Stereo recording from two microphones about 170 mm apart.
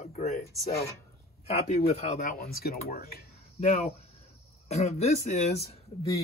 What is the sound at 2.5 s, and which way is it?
Speech, 60° left (ahead or behind).